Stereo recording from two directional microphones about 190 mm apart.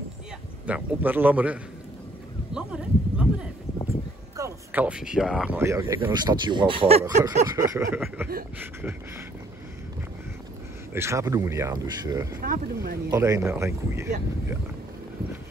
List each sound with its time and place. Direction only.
0.7 s speech: 10° right (ahead or behind)
2.5 s a sound: 5° right (ahead or behind)
5.1 s speech: 5° right (ahead or behind); by 7.2 s 30° right (ahead or behind)
7.5 s speech: 15° right (ahead or behind)
10.9 s speech: 15° right (ahead or behind)
12.4 s speech: 50° right (ahead or behind)
13.1 s speech: 15° right (ahead or behind)